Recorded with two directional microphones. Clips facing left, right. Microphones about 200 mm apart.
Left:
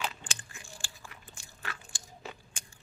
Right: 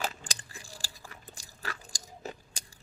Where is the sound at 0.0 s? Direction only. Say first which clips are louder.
Right 2 dB; 40° right (ahead or behind).